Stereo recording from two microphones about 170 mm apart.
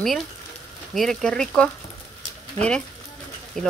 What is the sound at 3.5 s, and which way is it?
Speech, centre (ahead or behind).